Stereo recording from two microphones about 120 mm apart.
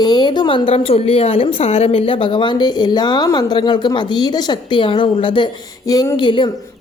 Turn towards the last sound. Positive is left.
turn(degrees=45)  # may be behind; listen again after turning